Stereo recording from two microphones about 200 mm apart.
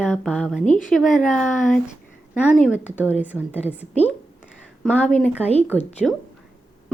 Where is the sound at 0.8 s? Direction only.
Centre (ahead or behind).